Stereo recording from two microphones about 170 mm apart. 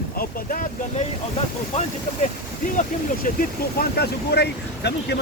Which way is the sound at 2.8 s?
55° left (ahead or behind).